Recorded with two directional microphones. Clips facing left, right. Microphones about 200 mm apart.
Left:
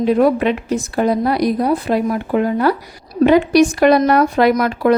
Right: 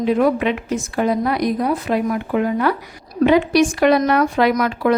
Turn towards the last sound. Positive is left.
turn(degrees=40)  # may be behind; listen again after turning